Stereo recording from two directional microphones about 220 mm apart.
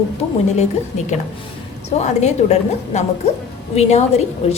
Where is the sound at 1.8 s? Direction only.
30° left (ahead or behind).